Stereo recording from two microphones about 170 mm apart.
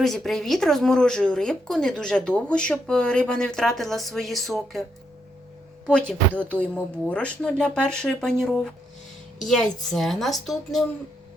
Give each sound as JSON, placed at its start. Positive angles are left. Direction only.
{"t": 0.0, "sound": "speech", "side_deg": 0}